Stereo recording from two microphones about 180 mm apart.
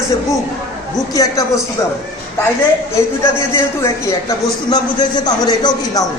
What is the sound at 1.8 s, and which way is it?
A man's voice, 15° left (ahead or behind).